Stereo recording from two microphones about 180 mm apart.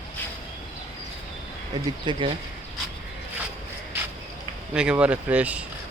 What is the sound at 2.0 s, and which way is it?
Speech, 30° right (ahead or behind).